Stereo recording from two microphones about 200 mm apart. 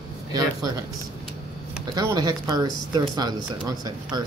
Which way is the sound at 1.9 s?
20° right (ahead or behind).